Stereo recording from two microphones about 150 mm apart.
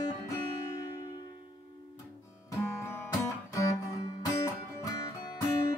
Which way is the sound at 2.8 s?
15° left (ahead or behind).